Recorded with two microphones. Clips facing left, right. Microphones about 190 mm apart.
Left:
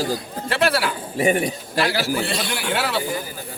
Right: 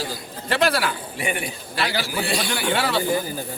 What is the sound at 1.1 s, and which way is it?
Speech, 40° left (ahead or behind).